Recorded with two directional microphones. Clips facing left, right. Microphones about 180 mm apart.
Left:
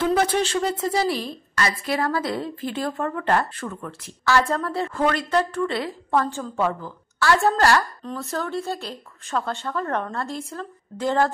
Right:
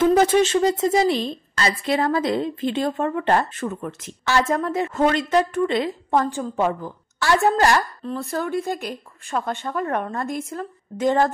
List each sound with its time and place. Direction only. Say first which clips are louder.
0.0 s a woman's voice: right 5 dB; 20° right (ahead or behind)